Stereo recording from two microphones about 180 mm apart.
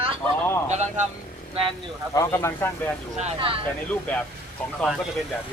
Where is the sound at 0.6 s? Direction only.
40° right (ahead or behind).